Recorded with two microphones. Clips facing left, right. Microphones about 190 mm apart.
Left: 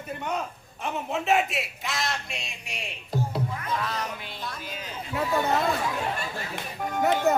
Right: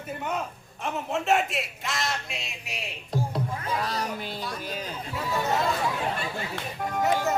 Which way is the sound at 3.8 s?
35° right (ahead or behind).